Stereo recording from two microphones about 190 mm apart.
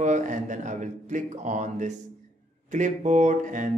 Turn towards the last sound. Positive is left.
turn(degrees=-40)  # may be behind; listen again after turning